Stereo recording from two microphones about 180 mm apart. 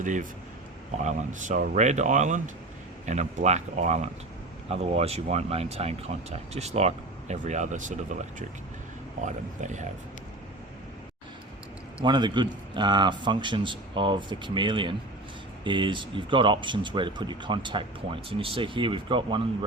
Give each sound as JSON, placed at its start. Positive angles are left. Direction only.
{"t": 0.0, "sound": "speech", "side_deg": -45}
{"t": 9.2, "sound": "speech", "side_deg": -40}
{"t": 12.0, "sound": "speech", "side_deg": -25}